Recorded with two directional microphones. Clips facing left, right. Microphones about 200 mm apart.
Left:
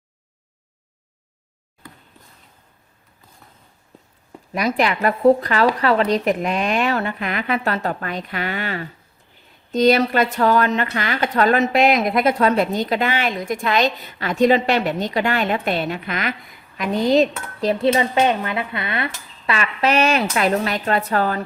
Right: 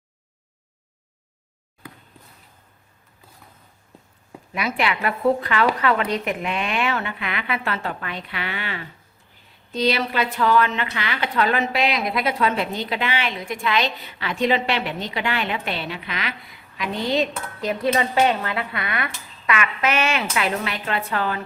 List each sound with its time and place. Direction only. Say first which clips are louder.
4.5 s speech: left 4 dB; 40° left (ahead or behind)
17.9 s speech: left 2 dB; 20° left (ahead or behind); by 21.4 s 40° left (ahead or behind)